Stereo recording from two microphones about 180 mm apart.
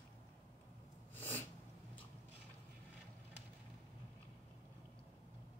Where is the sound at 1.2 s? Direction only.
10° left (ahead or behind).